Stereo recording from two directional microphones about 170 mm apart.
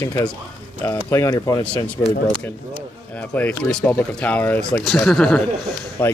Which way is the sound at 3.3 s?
10° left (ahead or behind).